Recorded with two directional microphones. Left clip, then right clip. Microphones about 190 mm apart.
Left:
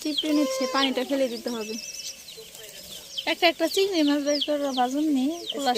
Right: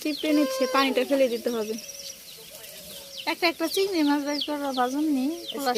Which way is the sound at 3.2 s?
20° left (ahead or behind).